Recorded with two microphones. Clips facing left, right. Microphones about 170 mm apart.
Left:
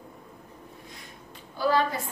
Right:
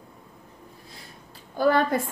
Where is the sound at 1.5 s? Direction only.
50° right (ahead or behind).